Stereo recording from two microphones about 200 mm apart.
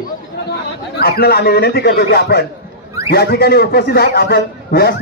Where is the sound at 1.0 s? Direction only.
50° left (ahead or behind).